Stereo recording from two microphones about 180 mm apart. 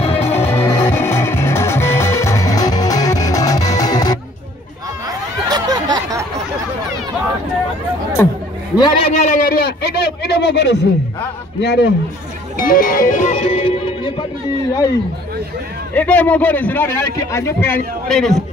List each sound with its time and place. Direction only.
0.0 s music: 35° left (ahead or behind)
0.3 s music: 10° left (ahead or behind)
5.0 s a sound: 20° right (ahead or behind)
8.7 s a man's voice: 25° left (ahead or behind)
9.1 s a man's voice: 50° left (ahead or behind)
12.5 s music: 50° left (ahead or behind); by 14.2 s 30° left (ahead or behind)
15.9 s a man's voice: 10° left (ahead or behind)
18.0 s a man's voice: centre (ahead or behind)